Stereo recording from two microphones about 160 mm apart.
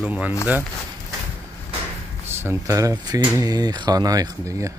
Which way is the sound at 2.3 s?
15° right (ahead or behind).